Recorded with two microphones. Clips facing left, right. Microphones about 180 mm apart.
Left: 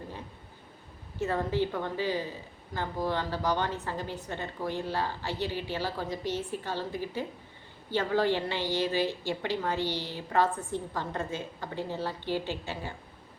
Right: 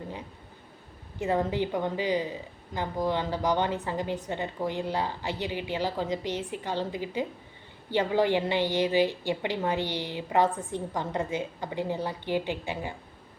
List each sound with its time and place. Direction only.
1.2 s a woman's voice: 15° right (ahead or behind)